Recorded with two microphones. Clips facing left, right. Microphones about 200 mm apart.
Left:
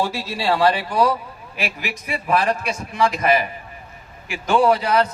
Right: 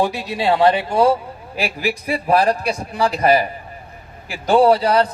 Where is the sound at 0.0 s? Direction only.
15° right (ahead or behind).